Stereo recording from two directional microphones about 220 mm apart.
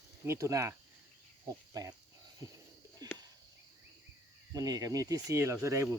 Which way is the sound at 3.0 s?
15° right (ahead or behind).